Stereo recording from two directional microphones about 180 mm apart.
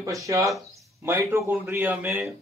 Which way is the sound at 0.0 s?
15° right (ahead or behind).